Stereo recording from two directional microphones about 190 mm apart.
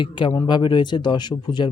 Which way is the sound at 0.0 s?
25° left (ahead or behind).